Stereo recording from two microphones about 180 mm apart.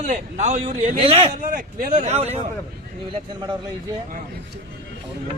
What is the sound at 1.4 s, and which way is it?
Speech, 50° right (ahead or behind).